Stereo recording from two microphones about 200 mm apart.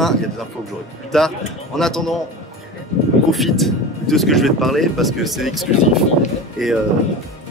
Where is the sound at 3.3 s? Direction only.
Centre (ahead or behind).